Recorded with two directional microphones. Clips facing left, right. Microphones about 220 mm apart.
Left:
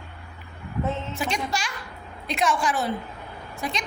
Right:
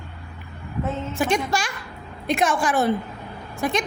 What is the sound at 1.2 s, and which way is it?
Speech, 50° right (ahead or behind).